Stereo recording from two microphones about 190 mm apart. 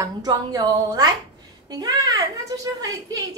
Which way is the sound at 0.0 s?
20° right (ahead or behind).